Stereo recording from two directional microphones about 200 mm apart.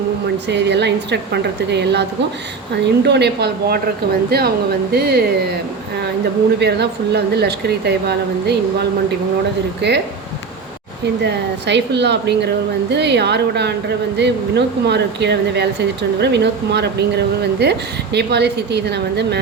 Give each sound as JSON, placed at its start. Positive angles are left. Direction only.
{"t": 0.4, "sound": "speech", "side_deg": -60}
{"t": 6.6, "sound": "speech", "side_deg": -55}
{"t": 9.8, "sound": "speech", "side_deg": -55}
{"t": 11.2, "sound": "speech", "side_deg": -60}